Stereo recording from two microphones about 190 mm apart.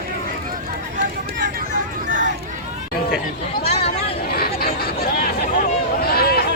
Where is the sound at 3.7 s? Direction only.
30° left (ahead or behind).